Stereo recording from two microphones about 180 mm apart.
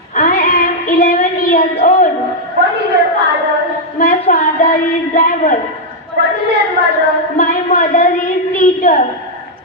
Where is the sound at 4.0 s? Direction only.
50° left (ahead or behind).